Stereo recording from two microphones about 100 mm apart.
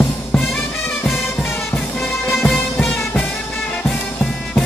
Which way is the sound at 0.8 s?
20° left (ahead or behind).